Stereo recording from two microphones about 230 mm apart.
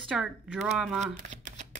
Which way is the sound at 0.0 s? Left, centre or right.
Centre.